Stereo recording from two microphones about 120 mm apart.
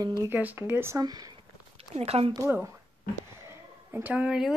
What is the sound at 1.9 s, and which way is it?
Speech, 55° right (ahead or behind).